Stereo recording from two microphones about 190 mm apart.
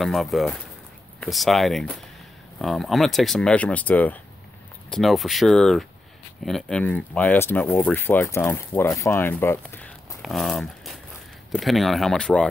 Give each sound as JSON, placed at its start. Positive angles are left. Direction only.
{"t": 0.0, "sound": "speech", "side_deg": 0}